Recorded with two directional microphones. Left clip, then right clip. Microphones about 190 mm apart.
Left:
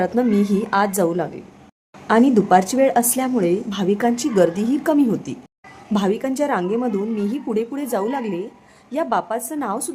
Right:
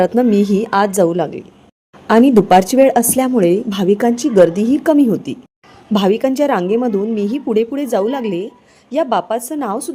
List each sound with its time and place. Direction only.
0.1 s a woman's voice: 25° right (ahead or behind)